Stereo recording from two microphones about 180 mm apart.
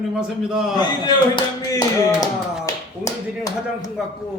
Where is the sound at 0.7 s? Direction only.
25° left (ahead or behind).